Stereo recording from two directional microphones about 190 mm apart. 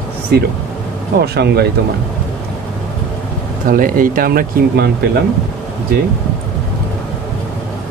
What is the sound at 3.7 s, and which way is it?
Speech, 45° right (ahead or behind).